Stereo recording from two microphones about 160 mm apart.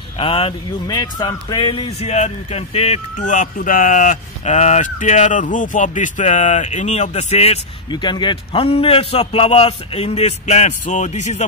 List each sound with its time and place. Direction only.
0.2 s a man's voice: 35° left (ahead or behind)
0.9 s speech: 25° left (ahead or behind); by 7.5 s 45° left (ahead or behind)
7.9 s a man's voice: 30° left (ahead or behind); by 11.4 s 50° left (ahead or behind)